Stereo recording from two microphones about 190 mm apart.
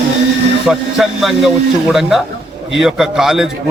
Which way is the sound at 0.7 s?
Centre (ahead or behind).